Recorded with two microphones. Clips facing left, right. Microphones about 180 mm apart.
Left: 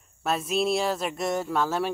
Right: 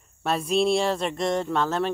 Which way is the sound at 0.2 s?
Centre (ahead or behind).